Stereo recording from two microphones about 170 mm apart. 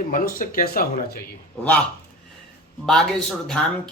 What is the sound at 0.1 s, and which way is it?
Speech, 55° left (ahead or behind).